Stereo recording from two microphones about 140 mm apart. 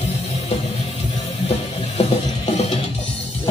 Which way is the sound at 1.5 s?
50° left (ahead or behind).